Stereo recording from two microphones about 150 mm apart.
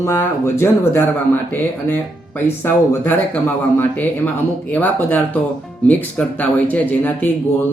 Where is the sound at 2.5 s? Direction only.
15° left (ahead or behind).